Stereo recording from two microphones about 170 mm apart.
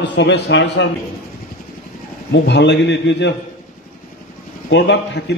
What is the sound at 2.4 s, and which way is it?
Speech, 90° left.